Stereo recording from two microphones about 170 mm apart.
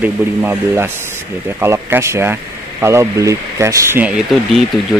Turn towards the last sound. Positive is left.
turn(degrees=-10)  # may be behind; listen again after turning